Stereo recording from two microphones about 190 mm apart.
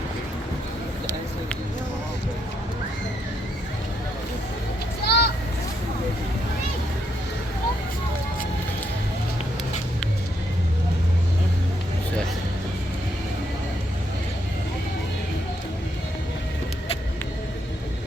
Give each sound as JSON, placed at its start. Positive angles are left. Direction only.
{"t": 5.0, "sound": "vehicle", "side_deg": 60}